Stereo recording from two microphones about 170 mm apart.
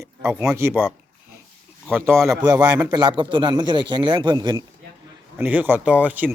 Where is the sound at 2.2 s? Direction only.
20° right (ahead or behind).